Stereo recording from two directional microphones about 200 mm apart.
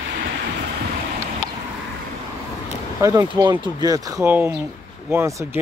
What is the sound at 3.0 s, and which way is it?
Speech, 20° right (ahead or behind).